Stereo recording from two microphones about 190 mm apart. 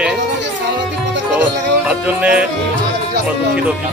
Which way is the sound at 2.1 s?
5° right (ahead or behind).